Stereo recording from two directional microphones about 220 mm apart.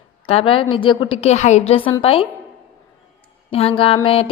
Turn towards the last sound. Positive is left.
turn(degrees=25)  # may be behind; listen again after turning